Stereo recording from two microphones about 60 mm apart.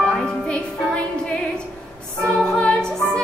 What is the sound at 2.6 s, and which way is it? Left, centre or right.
Music, centre.